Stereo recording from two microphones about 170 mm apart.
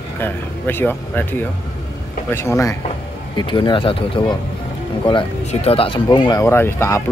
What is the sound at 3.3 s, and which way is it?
Speech, 30° left (ahead or behind).